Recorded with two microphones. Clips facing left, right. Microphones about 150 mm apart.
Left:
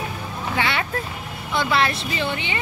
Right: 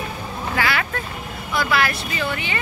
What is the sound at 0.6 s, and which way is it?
Speech, 25° left (ahead or behind).